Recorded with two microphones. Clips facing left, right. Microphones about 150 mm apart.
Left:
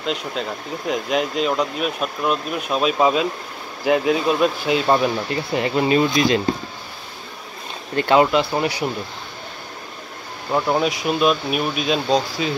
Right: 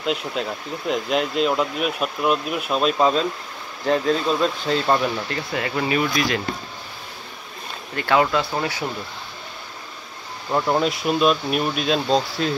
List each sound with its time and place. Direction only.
0.0 s speech: 5° right (ahead or behind); by 6.4 s 25° left (ahead or behind)
7.9 s speech: 25° left (ahead or behind)
10.5 s speech: 5° left (ahead or behind)